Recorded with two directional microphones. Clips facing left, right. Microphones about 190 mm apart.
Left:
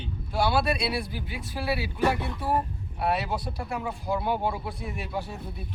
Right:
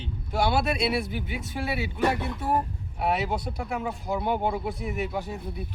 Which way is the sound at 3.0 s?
20° right (ahead or behind).